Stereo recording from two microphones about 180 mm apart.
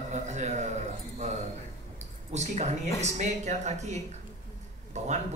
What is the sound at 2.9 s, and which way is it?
A man's voice, 40° right (ahead or behind).